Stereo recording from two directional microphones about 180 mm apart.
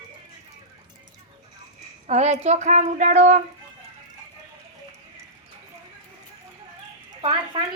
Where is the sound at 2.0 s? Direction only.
40° right (ahead or behind).